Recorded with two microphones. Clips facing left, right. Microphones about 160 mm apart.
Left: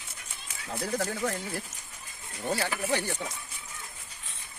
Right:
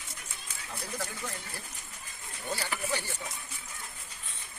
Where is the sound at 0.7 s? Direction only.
80° left.